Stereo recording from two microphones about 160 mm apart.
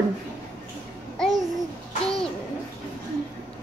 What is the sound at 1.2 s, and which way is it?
Babbling, 5° left (ahead or behind).